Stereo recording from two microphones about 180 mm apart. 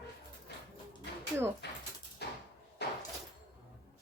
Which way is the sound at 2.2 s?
65° left (ahead or behind).